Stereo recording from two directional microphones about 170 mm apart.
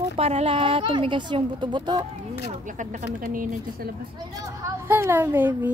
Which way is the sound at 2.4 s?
50° right (ahead or behind).